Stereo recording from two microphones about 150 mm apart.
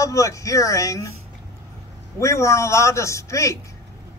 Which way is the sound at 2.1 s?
20° left (ahead or behind).